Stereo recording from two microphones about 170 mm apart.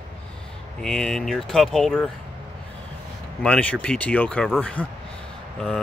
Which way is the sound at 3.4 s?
5° left (ahead or behind).